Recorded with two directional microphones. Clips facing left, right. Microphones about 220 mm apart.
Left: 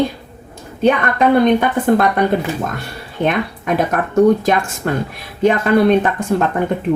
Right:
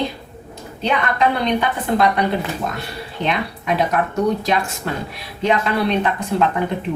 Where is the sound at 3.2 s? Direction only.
50° left (ahead or behind).